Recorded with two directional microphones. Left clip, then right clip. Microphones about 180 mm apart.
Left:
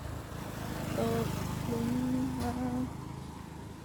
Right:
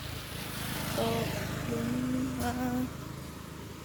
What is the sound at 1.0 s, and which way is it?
Vehicle, 70° left (ahead or behind).